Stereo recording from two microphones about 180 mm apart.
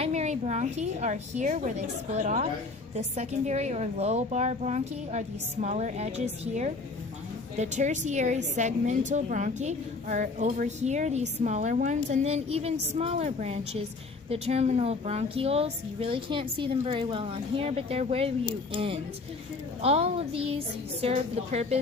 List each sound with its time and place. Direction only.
0.0 s a woman's voice: 40° right (ahead or behind)